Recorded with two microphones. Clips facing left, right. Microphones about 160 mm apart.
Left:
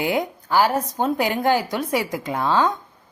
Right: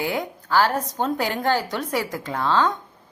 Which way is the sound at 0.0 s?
20° left (ahead or behind).